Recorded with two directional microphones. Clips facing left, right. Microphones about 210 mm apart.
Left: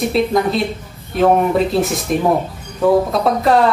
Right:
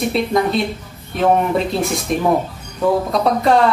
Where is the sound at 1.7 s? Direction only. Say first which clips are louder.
Left 2 dB; centre (ahead or behind).